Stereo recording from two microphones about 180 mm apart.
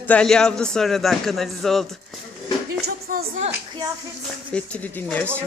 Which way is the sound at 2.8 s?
60° right (ahead or behind).